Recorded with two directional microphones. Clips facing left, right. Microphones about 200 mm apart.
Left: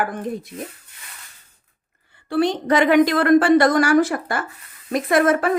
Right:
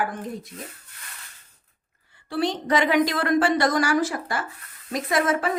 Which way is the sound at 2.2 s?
55° left (ahead or behind).